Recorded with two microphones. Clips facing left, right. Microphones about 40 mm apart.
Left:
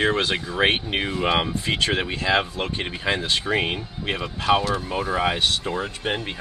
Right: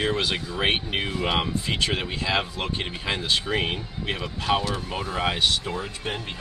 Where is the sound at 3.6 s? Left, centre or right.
Left.